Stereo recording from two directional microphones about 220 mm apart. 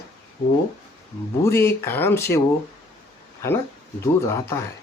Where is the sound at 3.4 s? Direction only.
10° left (ahead or behind).